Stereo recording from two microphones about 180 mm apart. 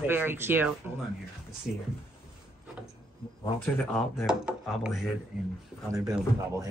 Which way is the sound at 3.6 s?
5° left (ahead or behind).